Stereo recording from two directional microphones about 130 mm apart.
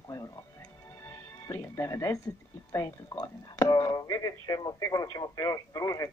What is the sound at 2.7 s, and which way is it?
Speech, 25° left (ahead or behind).